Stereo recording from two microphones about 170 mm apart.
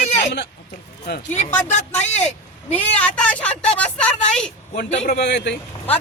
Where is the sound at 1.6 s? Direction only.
45° left (ahead or behind).